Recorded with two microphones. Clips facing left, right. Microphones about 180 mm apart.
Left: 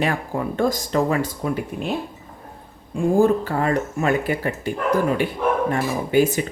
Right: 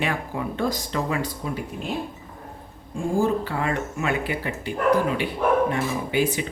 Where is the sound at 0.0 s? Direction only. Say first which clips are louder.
Left 4 dB; 45° left (ahead or behind).